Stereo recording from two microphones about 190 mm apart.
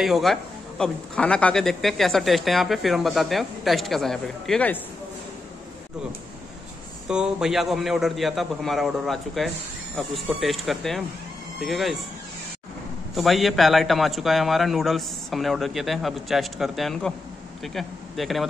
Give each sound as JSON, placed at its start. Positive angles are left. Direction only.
{"t": 0.0, "sound": "speech", "side_deg": 0}
{"t": 7.1, "sound": "speech", "side_deg": -5}
{"t": 13.1, "sound": "speech", "side_deg": 0}